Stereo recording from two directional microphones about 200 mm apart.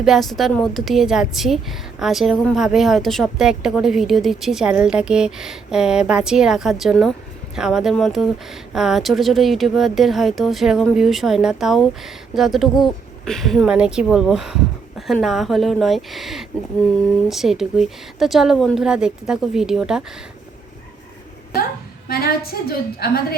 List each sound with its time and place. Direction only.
0.0 s a woman's voice: centre (ahead or behind)
22.1 s a woman's voice: 50° left (ahead or behind)